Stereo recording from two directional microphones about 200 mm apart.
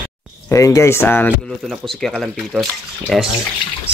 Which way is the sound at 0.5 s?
15° left (ahead or behind).